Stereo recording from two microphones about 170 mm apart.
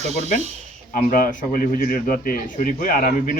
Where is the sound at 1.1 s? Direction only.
55° left (ahead or behind).